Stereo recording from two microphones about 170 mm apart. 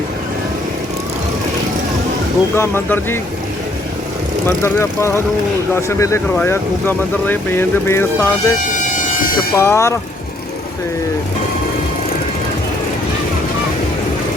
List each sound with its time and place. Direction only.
2.6 s speech: 15° left (ahead or behind)
4.6 s speech: 15° left (ahead or behind)
8.8 s a sound: 45° left (ahead or behind)
9.6 s speech: 15° left (ahead or behind)